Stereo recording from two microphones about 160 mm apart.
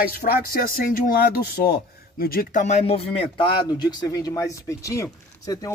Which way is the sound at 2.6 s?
40° left (ahead or behind).